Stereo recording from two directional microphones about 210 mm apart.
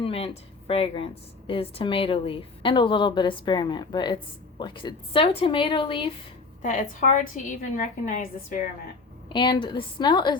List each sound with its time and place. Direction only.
0.0 s speech: 30° left (ahead or behind)
6.6 s a woman's voice: 35° left (ahead or behind)
9.3 s speech: 25° left (ahead or behind)